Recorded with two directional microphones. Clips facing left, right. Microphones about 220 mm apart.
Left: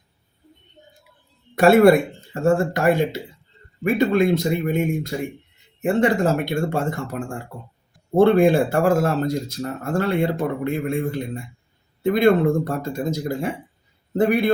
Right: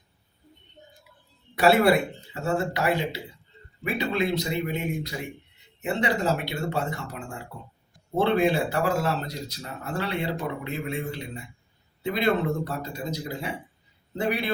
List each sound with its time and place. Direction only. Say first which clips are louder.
1.5 s speech: left 7 dB; 50° left (ahead or behind)